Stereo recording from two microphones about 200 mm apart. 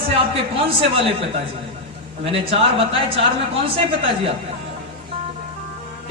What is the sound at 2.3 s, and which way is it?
Speech, 30° right (ahead or behind).